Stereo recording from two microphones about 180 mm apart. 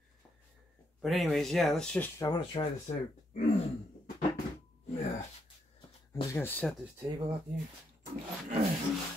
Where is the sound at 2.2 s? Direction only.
25° left (ahead or behind).